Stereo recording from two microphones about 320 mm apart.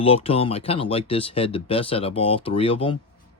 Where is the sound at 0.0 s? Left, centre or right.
Centre.